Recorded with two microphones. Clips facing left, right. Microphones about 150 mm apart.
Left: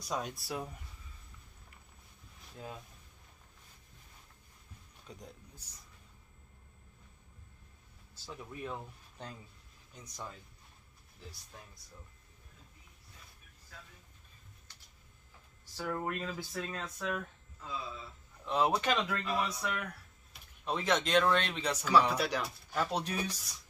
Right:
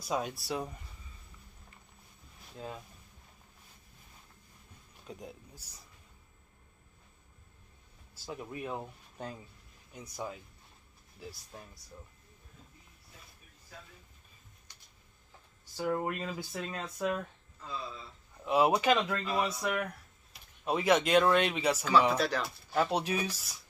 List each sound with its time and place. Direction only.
0.0 s speech: 5° right (ahead or behind)
2.5 s speech: centre (ahead or behind)
5.0 s a man's voice: 5° right (ahead or behind)
8.4 s speech: 10° right (ahead or behind)
9.9 s speech: 10° right (ahead or behind)
15.7 s speech: 20° right (ahead or behind)
16.0 s speech: 10° right (ahead or behind)
17.6 s speech: 5° left (ahead or behind)
18.4 s speech: 10° right (ahead or behind)
22.1 s speech: 10° left (ahead or behind)
22.4 s speech: 5° right (ahead or behind)